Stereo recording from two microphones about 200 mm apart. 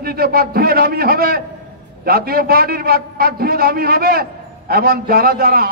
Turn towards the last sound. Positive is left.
turn(degrees=-50)  # may be behind; listen again after turning